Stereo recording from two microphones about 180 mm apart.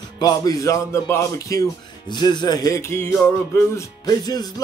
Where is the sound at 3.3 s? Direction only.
15° left (ahead or behind).